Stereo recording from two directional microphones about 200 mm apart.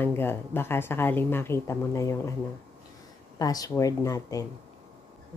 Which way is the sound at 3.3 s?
20° left (ahead or behind).